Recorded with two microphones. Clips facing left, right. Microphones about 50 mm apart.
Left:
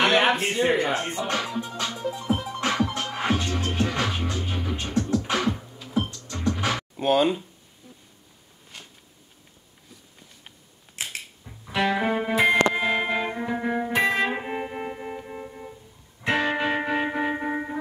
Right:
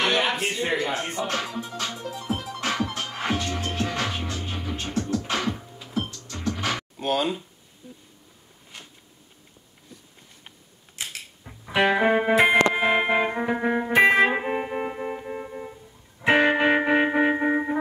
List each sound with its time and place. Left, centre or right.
0.2 s speech: left
1.2 s music: centre
6.2 s music: centre
11.0 s music: left
11.4 s music: right
14.0 s music: right
14.3 s music: centre
16.3 s music: right